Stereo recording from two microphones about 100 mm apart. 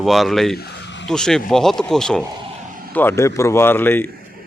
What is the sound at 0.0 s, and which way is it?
Speech, centre (ahead or behind).